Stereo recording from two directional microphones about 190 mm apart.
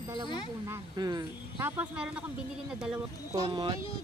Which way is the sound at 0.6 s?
20° right (ahead or behind).